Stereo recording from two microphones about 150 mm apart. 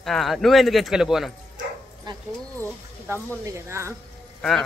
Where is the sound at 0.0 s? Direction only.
Centre (ahead or behind).